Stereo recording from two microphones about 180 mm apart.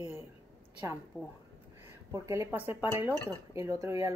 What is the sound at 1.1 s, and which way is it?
Speech, centre (ahead or behind).